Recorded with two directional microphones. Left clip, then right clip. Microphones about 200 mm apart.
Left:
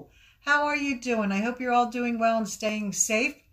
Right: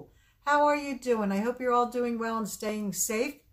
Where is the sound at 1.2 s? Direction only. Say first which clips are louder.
Left 1 dB; 20° right (ahead or behind).